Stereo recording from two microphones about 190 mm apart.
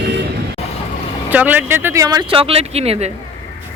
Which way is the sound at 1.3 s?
10° right (ahead or behind).